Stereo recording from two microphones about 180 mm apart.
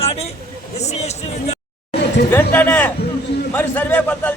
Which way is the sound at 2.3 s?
10° left (ahead or behind).